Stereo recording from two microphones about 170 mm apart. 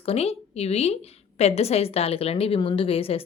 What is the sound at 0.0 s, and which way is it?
A woman's voice, 35° left (ahead or behind).